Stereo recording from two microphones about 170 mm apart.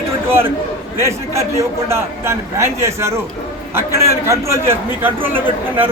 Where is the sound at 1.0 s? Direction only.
15° right (ahead or behind).